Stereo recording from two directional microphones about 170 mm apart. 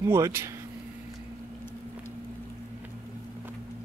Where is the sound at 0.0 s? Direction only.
15° right (ahead or behind).